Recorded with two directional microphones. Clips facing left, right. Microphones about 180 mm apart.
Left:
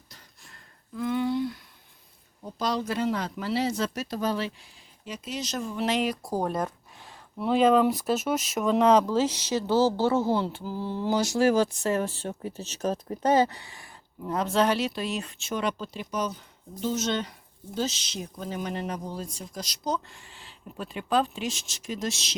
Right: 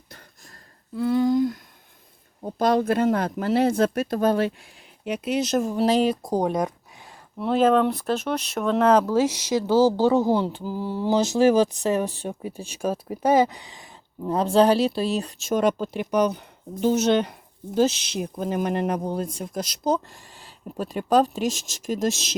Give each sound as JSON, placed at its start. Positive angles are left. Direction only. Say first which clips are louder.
{"t": 0.9, "sound": "a sound", "louder": "right 6 dB", "side_deg": -35}
{"t": 2.4, "sound": "speech", "louder": "right 8 dB", "side_deg": -55}
{"t": 5.7, "sound": "speech", "louder": "right 5 dB", "side_deg": -35}
{"t": 6.2, "sound": "speech", "louder": "right 5 dB", "side_deg": -15}
{"t": 14.3, "sound": "speech", "louder": "right 6 dB", "side_deg": -30}